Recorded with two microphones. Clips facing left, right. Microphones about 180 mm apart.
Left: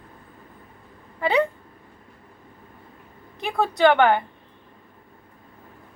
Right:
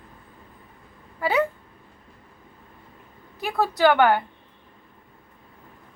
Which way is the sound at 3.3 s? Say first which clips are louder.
Left 1 dB; 5° right (ahead or behind).